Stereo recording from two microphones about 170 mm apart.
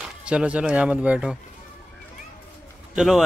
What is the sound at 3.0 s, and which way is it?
Speech, 5° right (ahead or behind).